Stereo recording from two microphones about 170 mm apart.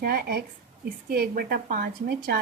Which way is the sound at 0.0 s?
65° right (ahead or behind).